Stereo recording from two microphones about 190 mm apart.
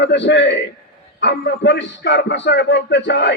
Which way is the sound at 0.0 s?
65° left (ahead or behind).